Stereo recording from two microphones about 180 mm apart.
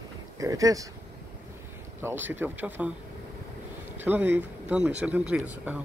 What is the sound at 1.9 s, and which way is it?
Speech, 10° right (ahead or behind).